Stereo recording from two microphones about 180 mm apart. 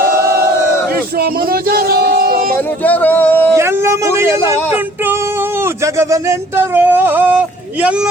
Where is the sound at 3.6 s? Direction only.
15° right (ahead or behind).